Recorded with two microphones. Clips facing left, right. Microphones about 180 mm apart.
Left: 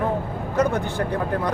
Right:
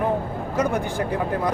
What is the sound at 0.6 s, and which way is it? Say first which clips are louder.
Speech: left 1 dB; 10° right (ahead or behind).